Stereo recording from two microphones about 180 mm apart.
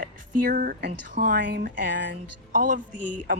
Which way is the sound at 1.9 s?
80° right.